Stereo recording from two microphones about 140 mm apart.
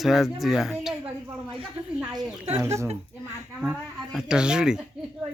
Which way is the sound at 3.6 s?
5° right (ahead or behind).